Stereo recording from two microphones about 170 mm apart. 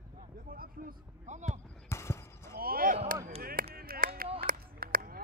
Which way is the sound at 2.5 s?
60° right (ahead or behind).